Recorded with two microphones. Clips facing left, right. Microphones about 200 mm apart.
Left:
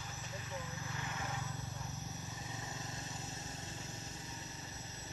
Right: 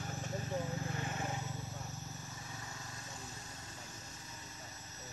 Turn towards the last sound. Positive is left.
turn(degrees=25)  # may be behind; listen again after turning